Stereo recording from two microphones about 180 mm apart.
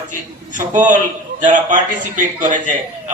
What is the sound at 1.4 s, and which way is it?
A man's voice, 45° right (ahead or behind).